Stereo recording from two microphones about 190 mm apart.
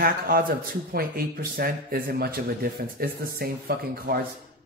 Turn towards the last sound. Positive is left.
turn(degrees=-50)  # may be behind; listen again after turning